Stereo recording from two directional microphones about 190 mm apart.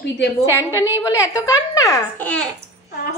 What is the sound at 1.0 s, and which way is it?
A woman's voice, 15° left (ahead or behind).